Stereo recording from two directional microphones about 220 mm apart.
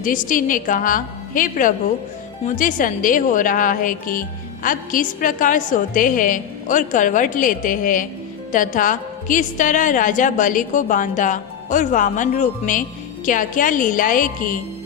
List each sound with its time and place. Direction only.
0.0 s a woman's voice: 35° left (ahead or behind)